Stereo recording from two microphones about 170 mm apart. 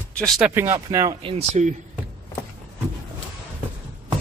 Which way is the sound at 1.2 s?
35° right (ahead or behind).